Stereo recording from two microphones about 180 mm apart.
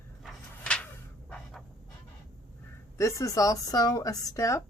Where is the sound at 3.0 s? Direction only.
15° left (ahead or behind).